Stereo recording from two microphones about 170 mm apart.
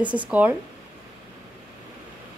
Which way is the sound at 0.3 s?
10° right (ahead or behind).